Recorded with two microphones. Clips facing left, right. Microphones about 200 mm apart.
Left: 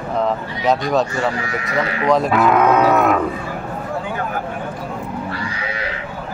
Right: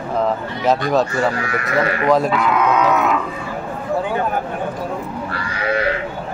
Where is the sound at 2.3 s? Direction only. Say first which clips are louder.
Left 3 dB; 50° left (ahead or behind).